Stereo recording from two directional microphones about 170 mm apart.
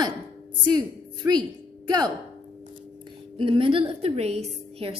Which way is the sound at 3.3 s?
30° right (ahead or behind).